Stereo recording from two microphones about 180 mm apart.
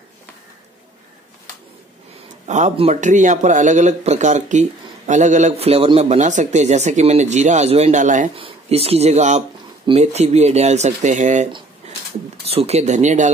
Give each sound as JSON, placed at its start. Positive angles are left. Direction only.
{"t": 2.4, "sound": "speech", "side_deg": -40}
{"t": 8.4, "sound": "speech", "side_deg": -35}
{"t": 12.4, "sound": "speech", "side_deg": -35}